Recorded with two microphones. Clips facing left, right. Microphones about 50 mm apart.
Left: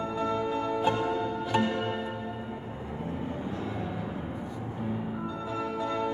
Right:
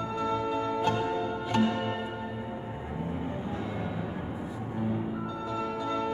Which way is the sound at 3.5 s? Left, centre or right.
Right.